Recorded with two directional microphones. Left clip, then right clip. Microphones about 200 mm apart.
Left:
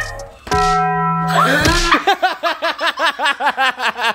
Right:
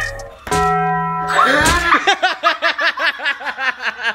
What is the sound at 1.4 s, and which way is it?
Music, 35° left (ahead or behind).